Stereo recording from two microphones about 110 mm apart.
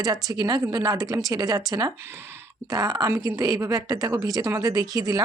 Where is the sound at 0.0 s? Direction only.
35° right (ahead or behind).